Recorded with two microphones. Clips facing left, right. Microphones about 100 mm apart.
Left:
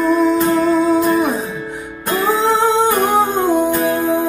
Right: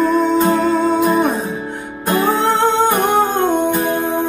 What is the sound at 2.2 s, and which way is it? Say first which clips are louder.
Music: left 1 dB; centre (ahead or behind).